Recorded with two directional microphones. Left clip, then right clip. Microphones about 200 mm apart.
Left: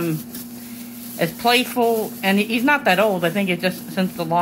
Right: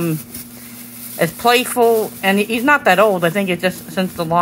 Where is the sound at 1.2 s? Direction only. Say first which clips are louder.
Right 4 dB; 5° right (ahead or behind).